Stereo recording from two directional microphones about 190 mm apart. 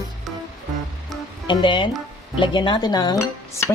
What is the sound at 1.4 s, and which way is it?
Speech, 25° left (ahead or behind).